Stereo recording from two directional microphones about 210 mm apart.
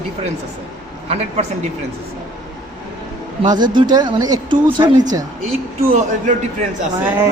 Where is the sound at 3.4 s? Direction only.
20° right (ahead or behind).